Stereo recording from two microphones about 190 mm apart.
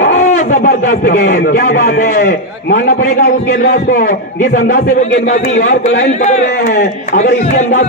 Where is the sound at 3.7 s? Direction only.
50° left (ahead or behind).